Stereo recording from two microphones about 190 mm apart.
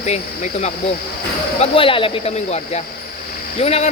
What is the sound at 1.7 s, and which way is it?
Speech, 30° left (ahead or behind).